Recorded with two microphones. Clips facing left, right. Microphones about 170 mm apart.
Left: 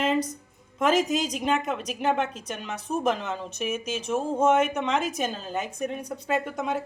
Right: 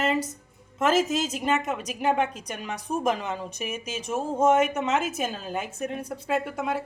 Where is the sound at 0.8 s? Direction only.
5° right (ahead or behind).